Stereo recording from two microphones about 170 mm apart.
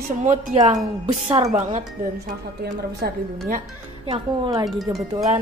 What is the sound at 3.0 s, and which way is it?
Speech, 65° right (ahead or behind).